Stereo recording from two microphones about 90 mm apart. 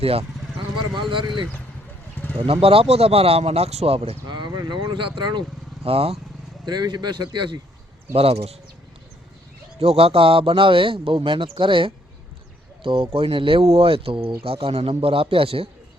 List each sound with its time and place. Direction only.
0.0 s speech: 90° right
1.1 s speech: 60° right (ahead or behind)
2.2 s bird: 20° left (ahead or behind)
2.5 s speech: 90° right; by 5.4 s 55° right (ahead or behind)
5.8 s speech: 90° right
6.7 s a man's voice: 50° right (ahead or behind)
8.1 s speech: 90° right
9.9 s speech: 90° right